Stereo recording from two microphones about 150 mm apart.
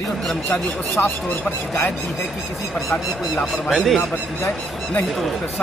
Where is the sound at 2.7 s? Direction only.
Centre (ahead or behind).